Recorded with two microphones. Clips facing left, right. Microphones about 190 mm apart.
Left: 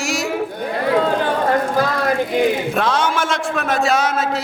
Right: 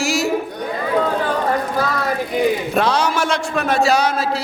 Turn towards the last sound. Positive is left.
turn(degrees=0)  # may be behind; listen again after turning